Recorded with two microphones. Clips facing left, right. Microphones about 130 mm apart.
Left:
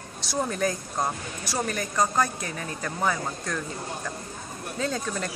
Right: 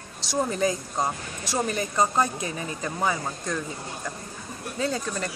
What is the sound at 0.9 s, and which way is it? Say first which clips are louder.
Speech: right 1 dB; 15° right (ahead or behind).